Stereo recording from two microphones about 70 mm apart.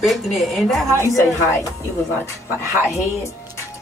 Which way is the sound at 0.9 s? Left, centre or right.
Left.